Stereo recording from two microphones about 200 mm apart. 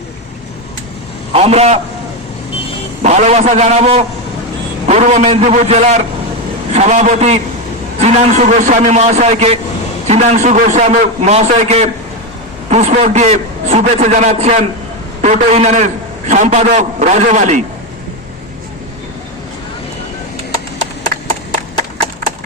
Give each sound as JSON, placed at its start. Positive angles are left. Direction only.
{"t": 1.3, "sound": "a man's voice", "side_deg": -30}
{"t": 3.0, "sound": "a man's voice", "side_deg": -35}